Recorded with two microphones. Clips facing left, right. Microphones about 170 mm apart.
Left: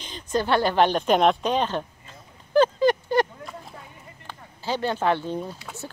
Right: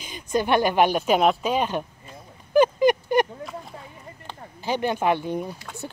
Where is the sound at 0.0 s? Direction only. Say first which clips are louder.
Right 1 dB; 10° right (ahead or behind).